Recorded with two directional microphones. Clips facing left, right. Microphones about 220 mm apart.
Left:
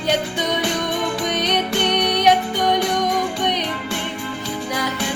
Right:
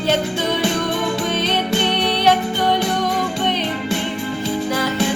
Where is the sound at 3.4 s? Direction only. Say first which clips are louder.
Right 1 dB; 15° left (ahead or behind).